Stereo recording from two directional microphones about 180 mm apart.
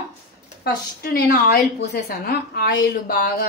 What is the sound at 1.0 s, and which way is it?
A woman's voice, 55° left (ahead or behind).